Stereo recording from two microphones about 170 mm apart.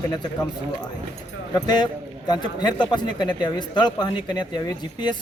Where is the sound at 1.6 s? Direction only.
25° left (ahead or behind).